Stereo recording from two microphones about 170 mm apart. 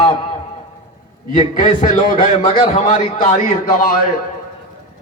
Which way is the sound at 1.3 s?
45° left (ahead or behind).